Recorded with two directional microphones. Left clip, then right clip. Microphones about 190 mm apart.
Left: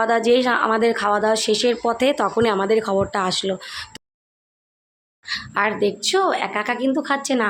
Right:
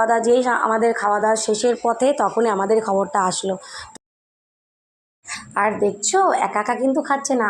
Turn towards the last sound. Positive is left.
turn(degrees=5)  # may be behind; listen again after turning